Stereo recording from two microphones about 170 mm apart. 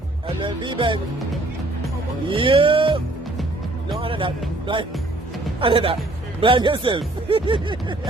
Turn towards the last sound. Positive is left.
turn(degrees=-30)  # may be behind; listen again after turning